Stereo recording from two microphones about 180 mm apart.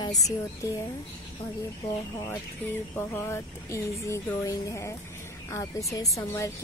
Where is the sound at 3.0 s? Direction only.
15° left (ahead or behind).